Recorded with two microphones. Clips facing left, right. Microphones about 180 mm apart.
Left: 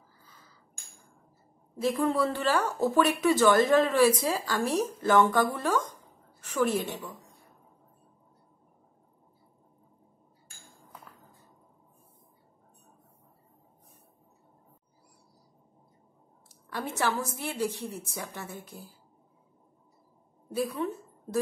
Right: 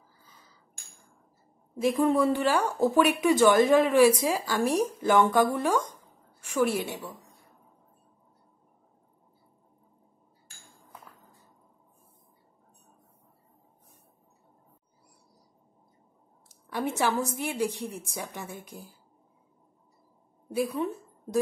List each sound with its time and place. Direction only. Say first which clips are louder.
1.8 s speech: right 3 dB; 15° right (ahead or behind)
16.7 s speech: right 3 dB; 15° right (ahead or behind)
20.5 s a woman's voice: right 2 dB; 15° right (ahead or behind)